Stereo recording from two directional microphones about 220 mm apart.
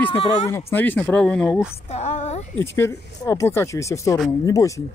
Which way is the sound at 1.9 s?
30° left (ahead or behind).